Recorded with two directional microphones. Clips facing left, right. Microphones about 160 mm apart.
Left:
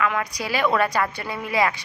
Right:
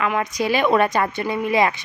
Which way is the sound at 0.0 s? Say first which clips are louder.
Right 3 dB; 25° right (ahead or behind).